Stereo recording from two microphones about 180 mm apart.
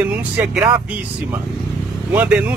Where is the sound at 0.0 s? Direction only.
10° right (ahead or behind).